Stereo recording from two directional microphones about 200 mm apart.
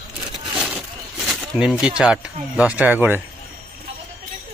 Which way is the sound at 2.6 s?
5° right (ahead or behind).